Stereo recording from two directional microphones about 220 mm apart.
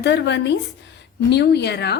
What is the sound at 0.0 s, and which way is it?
A woman's voice, 50° left (ahead or behind).